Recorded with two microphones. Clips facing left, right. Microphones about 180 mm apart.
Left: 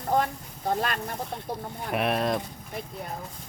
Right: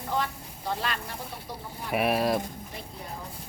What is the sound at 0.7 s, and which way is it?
Speech, 50° left (ahead or behind).